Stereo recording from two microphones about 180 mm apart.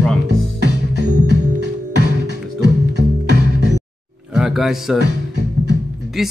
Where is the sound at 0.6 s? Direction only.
75° right (ahead or behind).